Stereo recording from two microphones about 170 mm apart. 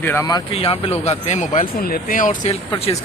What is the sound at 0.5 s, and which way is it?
Speech, 35° left (ahead or behind).